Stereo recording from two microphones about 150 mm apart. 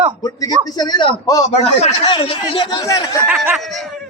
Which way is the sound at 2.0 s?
35° left (ahead or behind).